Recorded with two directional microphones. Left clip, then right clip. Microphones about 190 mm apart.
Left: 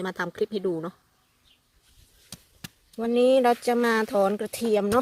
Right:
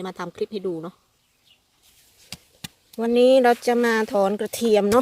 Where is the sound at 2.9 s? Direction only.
20° right (ahead or behind).